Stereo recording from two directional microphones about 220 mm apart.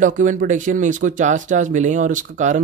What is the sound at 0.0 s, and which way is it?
Speech, 35° right (ahead or behind).